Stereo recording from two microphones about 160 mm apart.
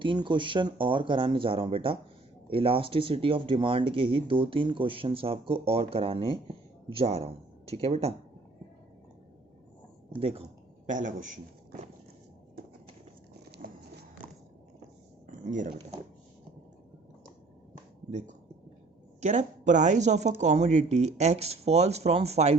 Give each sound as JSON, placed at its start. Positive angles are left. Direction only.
{"t": 0.0, "sound": "speech", "side_deg": -30}
{"t": 10.2, "sound": "speech", "side_deg": -35}
{"t": 10.8, "sound": "speech", "side_deg": -50}
{"t": 15.3, "sound": "a sound", "side_deg": -55}
{"t": 18.1, "sound": "speech", "side_deg": -50}